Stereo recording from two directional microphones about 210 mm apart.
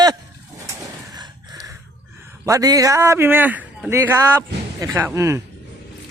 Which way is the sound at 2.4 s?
15° right (ahead or behind).